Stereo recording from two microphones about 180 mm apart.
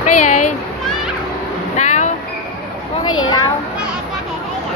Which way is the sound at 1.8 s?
40° left (ahead or behind).